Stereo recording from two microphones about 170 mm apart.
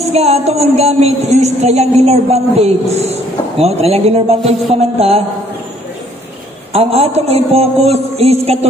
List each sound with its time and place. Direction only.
0.1 s a woman's voice: 40° right (ahead or behind)
6.7 s a woman's voice: 35° right (ahead or behind)